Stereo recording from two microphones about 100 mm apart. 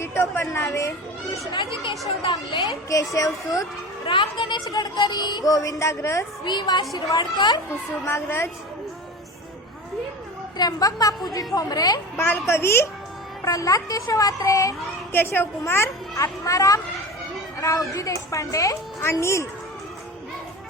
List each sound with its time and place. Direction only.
0.0 s speech: 25° left (ahead or behind)
1.5 s speech: 55° left (ahead or behind)
2.9 s a woman's voice: 35° left (ahead or behind)
4.0 s a child's voice: 55° left (ahead or behind)
4.6 s a woman's voice: 40° left (ahead or behind)
6.4 s speech: 50° left (ahead or behind)
8.0 s a woman's voice: 25° left (ahead or behind)
10.6 s a woman's voice: 40° left (ahead or behind)
12.1 s a woman's voice: 25° left (ahead or behind)
15.1 s a woman's voice: 20° left (ahead or behind)